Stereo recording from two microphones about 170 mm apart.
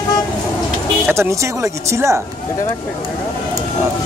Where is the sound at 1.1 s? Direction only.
15° right (ahead or behind).